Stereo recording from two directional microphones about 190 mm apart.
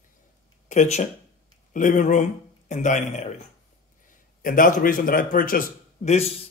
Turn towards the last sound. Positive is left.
turn(degrees=40)  # may be behind; listen again after turning